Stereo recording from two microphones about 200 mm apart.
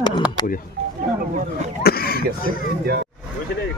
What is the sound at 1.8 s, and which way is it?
Throat clearing, 50° left (ahead or behind).